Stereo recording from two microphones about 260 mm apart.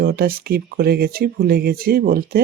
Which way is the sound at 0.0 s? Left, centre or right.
Right.